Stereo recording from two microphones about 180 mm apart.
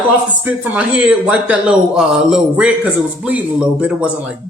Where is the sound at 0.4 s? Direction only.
10° right (ahead or behind).